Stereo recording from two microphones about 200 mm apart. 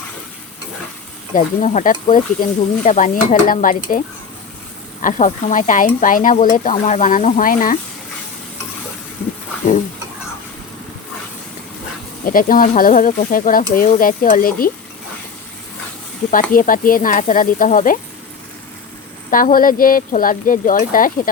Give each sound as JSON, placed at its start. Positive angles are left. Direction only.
{"t": 1.3, "sound": "speech", "side_deg": 35}
{"t": 5.0, "sound": "speech", "side_deg": 40}
{"t": 12.2, "sound": "speech", "side_deg": 45}
{"t": 16.3, "sound": "speech", "side_deg": 45}
{"t": 19.3, "sound": "speech", "side_deg": 45}